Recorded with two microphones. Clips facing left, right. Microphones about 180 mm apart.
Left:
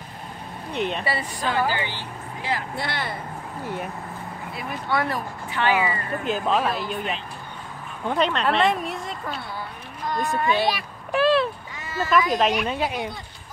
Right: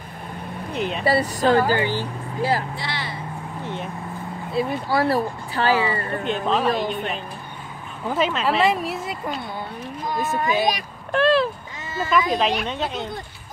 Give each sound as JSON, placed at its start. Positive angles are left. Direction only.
{"t": 0.7, "sound": "speech", "side_deg": 0}
{"t": 1.0, "sound": "speech", "side_deg": -40}
{"t": 2.7, "sound": "speech", "side_deg": 55}
{"t": 3.6, "sound": "speech", "side_deg": 10}
{"t": 4.6, "sound": "speech", "side_deg": -30}
{"t": 6.2, "sound": "speech", "side_deg": 5}
{"t": 10.3, "sound": "speech", "side_deg": -15}
{"t": 11.1, "sound": "speech", "side_deg": 5}